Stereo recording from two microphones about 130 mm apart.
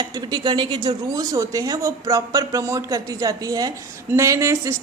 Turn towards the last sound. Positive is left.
turn(degrees=-25)  # may be behind; listen again after turning